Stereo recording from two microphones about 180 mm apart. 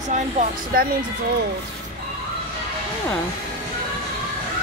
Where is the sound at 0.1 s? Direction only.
40° right (ahead or behind).